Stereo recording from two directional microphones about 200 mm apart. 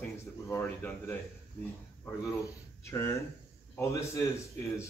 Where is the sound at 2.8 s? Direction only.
15° left (ahead or behind).